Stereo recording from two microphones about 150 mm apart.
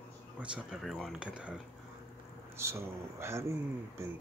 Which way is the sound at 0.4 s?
10° right (ahead or behind).